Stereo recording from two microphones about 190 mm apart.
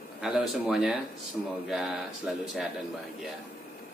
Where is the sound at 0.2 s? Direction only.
Centre (ahead or behind).